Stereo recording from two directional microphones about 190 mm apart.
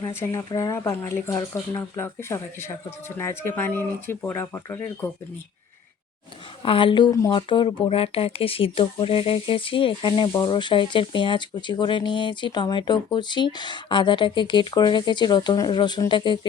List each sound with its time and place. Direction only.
0.0 s speech: 15° left (ahead or behind)
6.6 s speech: 25° left (ahead or behind)